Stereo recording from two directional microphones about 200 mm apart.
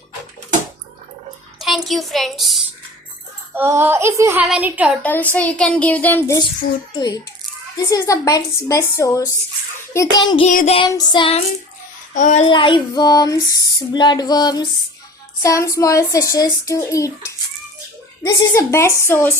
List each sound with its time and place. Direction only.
1.5 s a child's voice: centre (ahead or behind)
3.5 s speech: 10° right (ahead or behind)
5.3 s a child's voice: 5° left (ahead or behind)
10.5 s a sound: 40° left (ahead or behind)
10.8 s speech: 20° left (ahead or behind)
12.1 s a child's voice: 40° left (ahead or behind)
12.5 s a child's voice: 25° left (ahead or behind)